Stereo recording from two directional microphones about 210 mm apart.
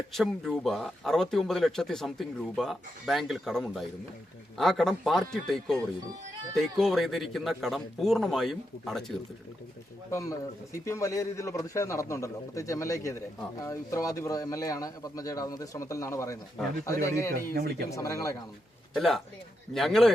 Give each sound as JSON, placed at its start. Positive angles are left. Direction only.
{"t": 0.1, "sound": "speech", "side_deg": 0}
{"t": 10.1, "sound": "a man's voice", "side_deg": 15}
{"t": 17.5, "sound": "speech", "side_deg": -45}
{"t": 17.9, "sound": "a man's voice", "side_deg": 15}
{"t": 18.9, "sound": "speech", "side_deg": 0}